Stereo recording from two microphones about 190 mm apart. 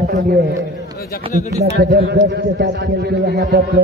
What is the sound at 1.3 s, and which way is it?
Speech, 40° left (ahead or behind).